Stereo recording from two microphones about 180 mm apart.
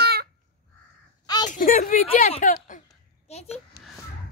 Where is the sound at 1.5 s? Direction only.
50° left (ahead or behind).